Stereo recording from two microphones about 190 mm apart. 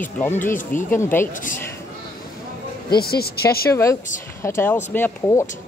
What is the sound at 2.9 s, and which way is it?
Speech, 55° left (ahead or behind).